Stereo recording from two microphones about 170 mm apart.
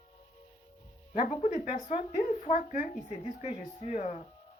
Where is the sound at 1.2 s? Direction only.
40° left (ahead or behind).